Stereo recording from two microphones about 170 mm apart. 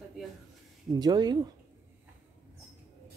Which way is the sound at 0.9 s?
25° right (ahead or behind).